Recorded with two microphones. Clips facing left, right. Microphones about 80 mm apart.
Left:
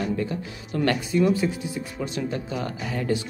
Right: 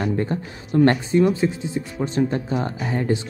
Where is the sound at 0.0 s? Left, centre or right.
Right.